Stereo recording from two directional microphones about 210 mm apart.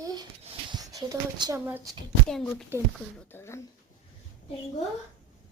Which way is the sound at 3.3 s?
15° left (ahead or behind).